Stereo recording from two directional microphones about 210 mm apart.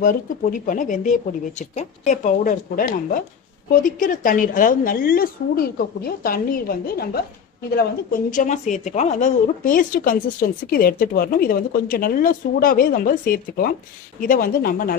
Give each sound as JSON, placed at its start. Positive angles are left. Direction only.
{"t": 0.0, "sound": "a woman's voice", "side_deg": 40}